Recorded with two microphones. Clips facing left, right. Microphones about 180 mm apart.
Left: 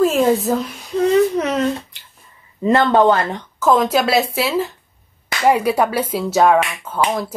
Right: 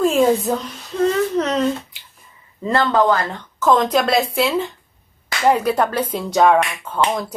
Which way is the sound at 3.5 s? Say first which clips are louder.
Left 1 dB; 10° left (ahead or behind).